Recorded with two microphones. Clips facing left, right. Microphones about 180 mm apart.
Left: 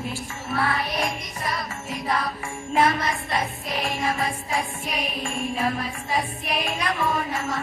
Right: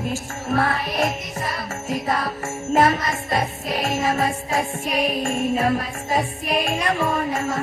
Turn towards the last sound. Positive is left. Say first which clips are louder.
# right 4 dB
turn(degrees=-45)  # may be behind; listen again after turning